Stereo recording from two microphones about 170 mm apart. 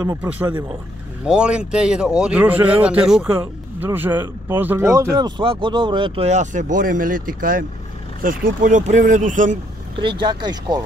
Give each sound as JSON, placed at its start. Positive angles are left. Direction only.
{"t": 0.0, "sound": "speech", "side_deg": -20}
{"t": 1.2, "sound": "speech", "side_deg": -5}
{"t": 9.9, "sound": "speech", "side_deg": -30}